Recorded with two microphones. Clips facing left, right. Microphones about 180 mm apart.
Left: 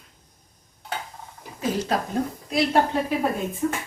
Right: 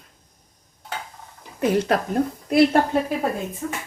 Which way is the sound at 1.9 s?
65° right (ahead or behind).